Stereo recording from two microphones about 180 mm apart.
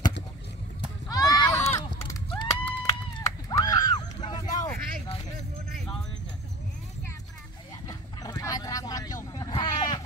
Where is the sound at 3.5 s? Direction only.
20° left (ahead or behind).